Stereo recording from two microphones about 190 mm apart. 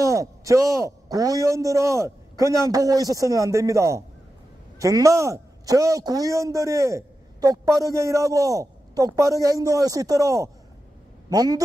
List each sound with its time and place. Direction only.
0.0 s a man's voice: 15° right (ahead or behind)